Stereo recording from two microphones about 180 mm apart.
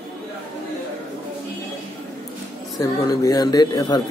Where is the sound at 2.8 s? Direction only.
20° left (ahead or behind).